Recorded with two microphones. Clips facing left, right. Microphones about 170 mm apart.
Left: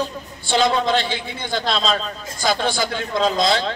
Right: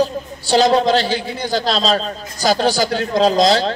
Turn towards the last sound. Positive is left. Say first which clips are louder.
# right 5 dB
turn(degrees=-40)  # may be behind; listen again after turning